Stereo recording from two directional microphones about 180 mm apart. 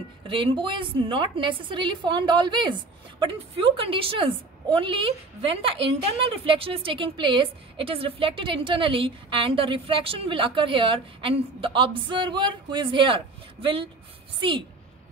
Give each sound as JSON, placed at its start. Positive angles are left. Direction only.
{"t": 0.3, "sound": "a woman's voice", "side_deg": -30}